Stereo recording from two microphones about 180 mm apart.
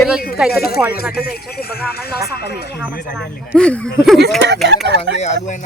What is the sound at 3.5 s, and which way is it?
Speech, 5° left (ahead or behind).